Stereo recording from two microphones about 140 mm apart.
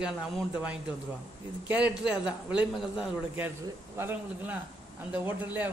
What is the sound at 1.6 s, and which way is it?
Speech, 10° right (ahead or behind).